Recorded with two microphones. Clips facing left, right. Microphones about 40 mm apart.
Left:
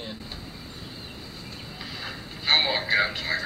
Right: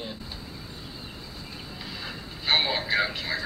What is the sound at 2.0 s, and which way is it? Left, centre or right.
Speech, centre.